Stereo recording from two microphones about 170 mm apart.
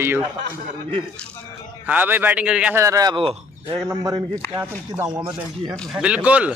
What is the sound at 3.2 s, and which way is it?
Speech, 35° right (ahead or behind).